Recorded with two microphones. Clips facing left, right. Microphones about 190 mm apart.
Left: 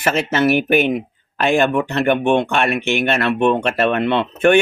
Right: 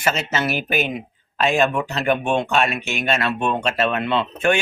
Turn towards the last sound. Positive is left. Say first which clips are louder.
# left 6 dB
turn(degrees=60)  # may be behind; listen again after turning